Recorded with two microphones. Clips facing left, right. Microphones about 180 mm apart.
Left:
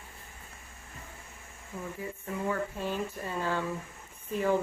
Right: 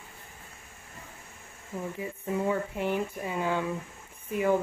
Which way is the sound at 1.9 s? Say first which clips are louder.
Right 6 dB; 20° right (ahead or behind).